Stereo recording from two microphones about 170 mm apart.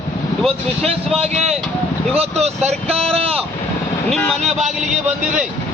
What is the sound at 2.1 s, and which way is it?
Speech, 40° right (ahead or behind).